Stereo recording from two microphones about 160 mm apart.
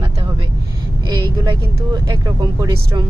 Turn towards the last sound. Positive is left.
turn(degrees=-20)  # may be behind; listen again after turning